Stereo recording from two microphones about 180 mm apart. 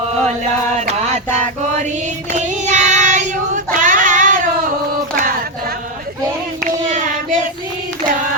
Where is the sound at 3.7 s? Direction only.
45° right (ahead or behind).